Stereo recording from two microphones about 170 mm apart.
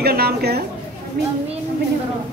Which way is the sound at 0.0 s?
65° right (ahead or behind).